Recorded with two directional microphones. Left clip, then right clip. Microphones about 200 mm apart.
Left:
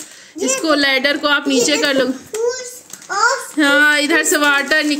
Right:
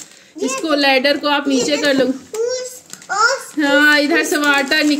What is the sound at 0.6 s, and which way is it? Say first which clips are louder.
Speech: right 1 dB; 10° right (ahead or behind).